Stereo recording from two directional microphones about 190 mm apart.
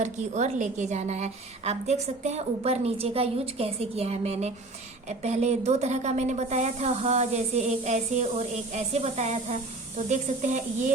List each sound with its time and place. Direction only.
0.0 s a woman's voice: 35° right (ahead or behind)